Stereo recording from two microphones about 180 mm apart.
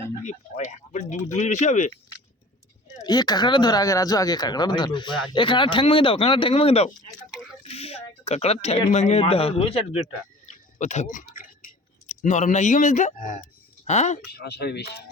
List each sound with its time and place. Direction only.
0.3 s speech: 40° left (ahead or behind)
3.0 s speech: 20° left (ahead or behind); by 14.2 s 40° left (ahead or behind)
14.3 s speech: 60° left (ahead or behind)